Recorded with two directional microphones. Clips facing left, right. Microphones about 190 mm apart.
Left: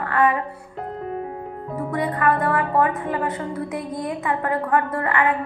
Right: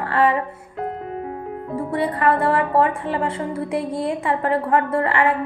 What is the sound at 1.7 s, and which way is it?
A woman's voice, 30° right (ahead or behind).